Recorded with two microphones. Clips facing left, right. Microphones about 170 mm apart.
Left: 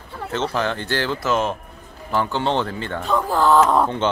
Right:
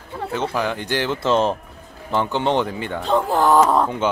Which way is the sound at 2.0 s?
20° right (ahead or behind).